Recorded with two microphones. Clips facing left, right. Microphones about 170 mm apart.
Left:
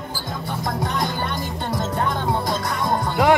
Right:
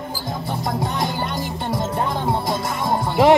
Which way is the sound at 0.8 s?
20° right (ahead or behind).